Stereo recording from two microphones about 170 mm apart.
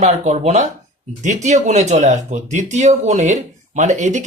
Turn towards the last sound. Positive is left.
turn(degrees=-45)  # may be behind; listen again after turning